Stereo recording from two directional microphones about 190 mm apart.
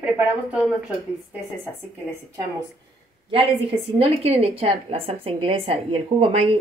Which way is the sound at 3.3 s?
30° right (ahead or behind).